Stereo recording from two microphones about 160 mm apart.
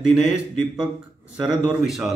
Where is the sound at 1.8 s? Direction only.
Centre (ahead or behind).